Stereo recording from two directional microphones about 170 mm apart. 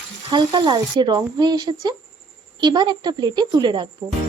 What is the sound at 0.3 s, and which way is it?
Speech, 25° right (ahead or behind).